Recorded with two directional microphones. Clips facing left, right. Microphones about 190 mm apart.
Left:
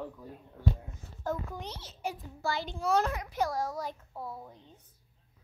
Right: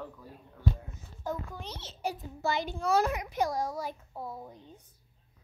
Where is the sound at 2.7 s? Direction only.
5° right (ahead or behind).